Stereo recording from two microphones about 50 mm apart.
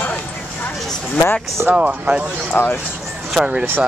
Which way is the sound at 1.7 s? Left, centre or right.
Right.